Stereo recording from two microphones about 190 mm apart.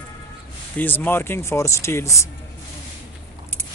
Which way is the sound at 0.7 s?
10° left (ahead or behind).